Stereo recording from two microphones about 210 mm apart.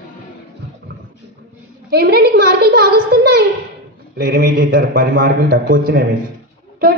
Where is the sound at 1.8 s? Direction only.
50° right (ahead or behind).